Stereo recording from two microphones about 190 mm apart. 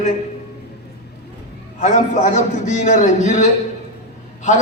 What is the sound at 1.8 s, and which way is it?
A man's voice, 40° left (ahead or behind).